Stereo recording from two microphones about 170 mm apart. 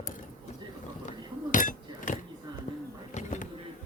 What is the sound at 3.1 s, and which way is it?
Bee, 45° left (ahead or behind).